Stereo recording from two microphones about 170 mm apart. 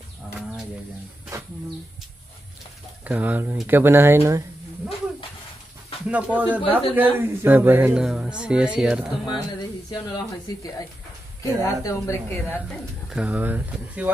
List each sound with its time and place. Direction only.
3.0 s speech: 10° right (ahead or behind)
6.0 s speech: 5° right (ahead or behind)
7.0 s music: 10° right (ahead or behind)
9.8 s a woman's voice: 25° left (ahead or behind)
13.1 s speech: 10° right (ahead or behind)